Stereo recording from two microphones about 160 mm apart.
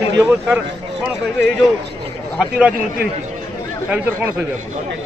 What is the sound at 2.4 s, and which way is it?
Speech, 5° right (ahead or behind).